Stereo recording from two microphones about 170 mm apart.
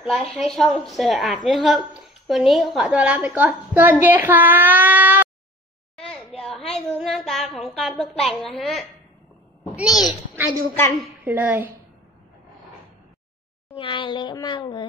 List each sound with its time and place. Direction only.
0.4 s a woman's voice: centre (ahead or behind)
6.9 s a woman's voice: centre (ahead or behind)
13.7 s speech: 30° left (ahead or behind)